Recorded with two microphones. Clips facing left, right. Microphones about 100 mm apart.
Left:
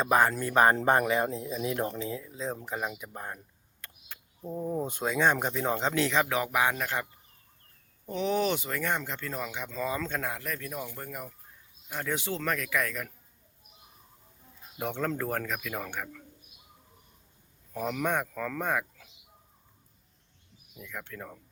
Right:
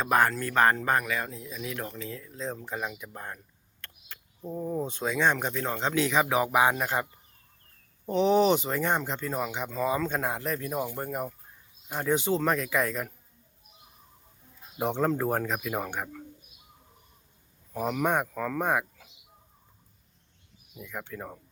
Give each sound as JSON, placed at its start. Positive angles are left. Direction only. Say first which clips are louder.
{"t": 0.0, "sound": "speech", "louder": "even", "side_deg": 0}
{"t": 0.3, "sound": "speech", "louder": "left 1 dB", "side_deg": 15}
{"t": 0.8, "sound": "speech", "louder": "left 3 dB", "side_deg": 25}
{"t": 2.1, "sound": "speech", "louder": "left 1 dB", "side_deg": 10}
{"t": 5.9, "sound": "speech", "louder": "right 6 dB", "side_deg": -5}
{"t": 14.8, "sound": "speech", "louder": "right 5 dB", "side_deg": -20}
{"t": 17.7, "sound": "speech", "louder": "right 3 dB", "side_deg": -10}
{"t": 20.7, "sound": "speech", "louder": "right 3 dB", "side_deg": -15}